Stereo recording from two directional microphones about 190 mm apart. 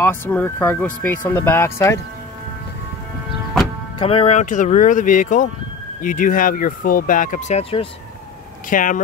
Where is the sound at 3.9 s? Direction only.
30° left (ahead or behind).